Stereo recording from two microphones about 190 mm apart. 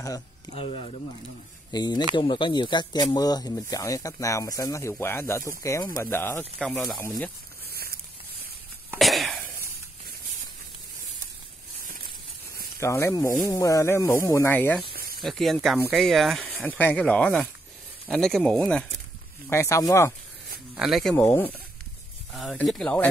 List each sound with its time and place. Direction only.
0.6 s speech: 30° left (ahead or behind); by 6.4 s 10° left (ahead or behind)
6.6 s speech: centre (ahead or behind)
7.0 s speech: 10° left (ahead or behind)
7.7 s a sound: 55° right (ahead or behind)
8.9 s a sound: centre (ahead or behind)
12.8 s speech: 15° left (ahead or behind)
14.9 s snake: 50° right (ahead or behind)
15.1 s speech: centre (ahead or behind)
19.5 s speech: 15° left (ahead or behind)
20.7 s speech: 5° right (ahead or behind)